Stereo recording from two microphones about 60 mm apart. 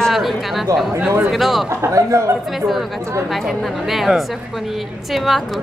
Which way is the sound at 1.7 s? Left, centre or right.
Right.